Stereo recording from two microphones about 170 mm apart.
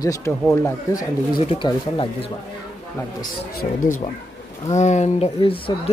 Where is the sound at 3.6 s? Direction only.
50° left (ahead or behind).